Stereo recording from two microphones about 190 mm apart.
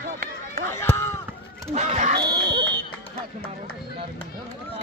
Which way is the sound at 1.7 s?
40° right (ahead or behind).